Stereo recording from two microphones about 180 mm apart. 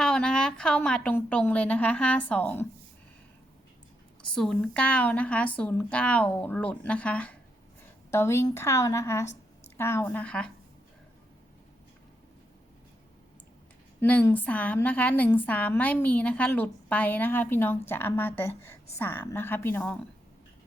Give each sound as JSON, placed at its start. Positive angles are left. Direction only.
{"t": 0.0, "sound": "a woman's voice", "side_deg": 5}
{"t": 4.3, "sound": "a woman's voice", "side_deg": 5}
{"t": 14.0, "sound": "a woman's voice", "side_deg": 10}